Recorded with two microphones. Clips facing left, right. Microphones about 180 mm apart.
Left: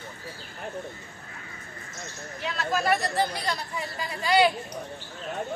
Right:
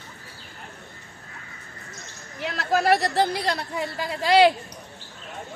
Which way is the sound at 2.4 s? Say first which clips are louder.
Right 4 dB; 75° right (ahead or behind).